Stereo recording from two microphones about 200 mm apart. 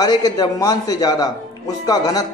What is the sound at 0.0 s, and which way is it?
Speech, 20° left (ahead or behind).